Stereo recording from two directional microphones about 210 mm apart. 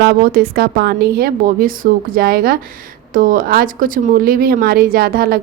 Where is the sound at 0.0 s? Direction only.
45° right (ahead or behind).